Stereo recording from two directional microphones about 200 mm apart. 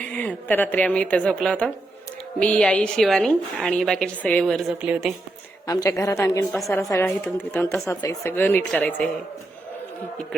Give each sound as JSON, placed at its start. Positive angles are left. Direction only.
{"t": 0.0, "sound": "a woman's voice", "side_deg": 10}
{"t": 5.6, "sound": "a woman's voice", "side_deg": 15}